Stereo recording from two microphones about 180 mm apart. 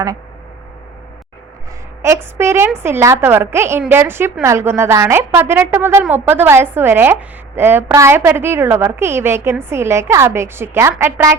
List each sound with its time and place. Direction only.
2.0 s a woman's voice: 15° right (ahead or behind)